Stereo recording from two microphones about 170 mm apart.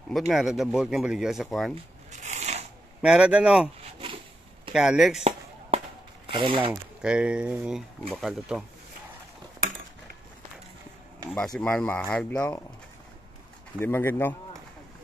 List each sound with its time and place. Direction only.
0.3 s speech: 5° right (ahead or behind)
2.0 s a sound: 45° right (ahead or behind)
3.0 s speech: 5° right (ahead or behind)
4.7 s speech: 5° right (ahead or behind)
6.2 s speech: 30° right (ahead or behind)
6.7 s speech: 5° right (ahead or behind)
11.3 s speech: 5° left (ahead or behind)
13.7 s speech: 10° left (ahead or behind)